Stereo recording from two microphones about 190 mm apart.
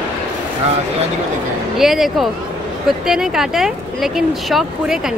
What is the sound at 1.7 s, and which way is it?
Speech, centre (ahead or behind).